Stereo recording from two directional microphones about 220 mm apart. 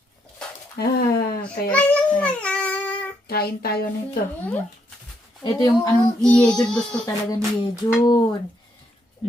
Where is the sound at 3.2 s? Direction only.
45° left (ahead or behind).